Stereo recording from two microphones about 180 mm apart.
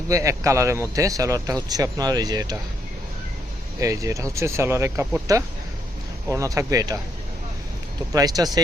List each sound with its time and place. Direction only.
0.1 s speech: 15° right (ahead or behind)
3.8 s speech: 15° right (ahead or behind)
8.1 s speech: 20° right (ahead or behind)